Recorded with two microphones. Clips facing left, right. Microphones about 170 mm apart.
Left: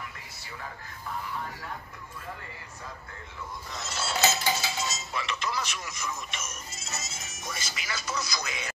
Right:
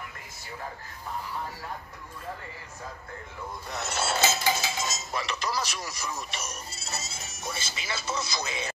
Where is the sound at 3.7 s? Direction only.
60° right (ahead or behind).